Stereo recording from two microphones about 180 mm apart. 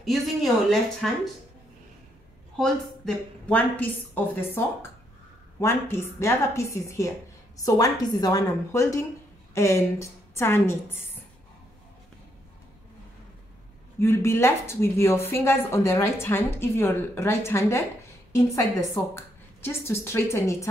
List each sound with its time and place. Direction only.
0.0 s speech: centre (ahead or behind)
3.4 s a woman's voice: 10° left (ahead or behind)
13.9 s a woman's voice: 15° left (ahead or behind)